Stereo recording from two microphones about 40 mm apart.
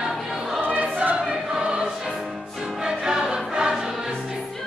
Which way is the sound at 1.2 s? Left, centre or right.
Centre.